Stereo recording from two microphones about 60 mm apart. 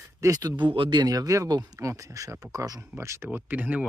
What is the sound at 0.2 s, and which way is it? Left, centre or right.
Speech, right.